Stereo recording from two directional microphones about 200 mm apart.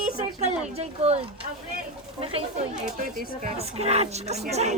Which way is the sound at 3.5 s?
30° right (ahead or behind).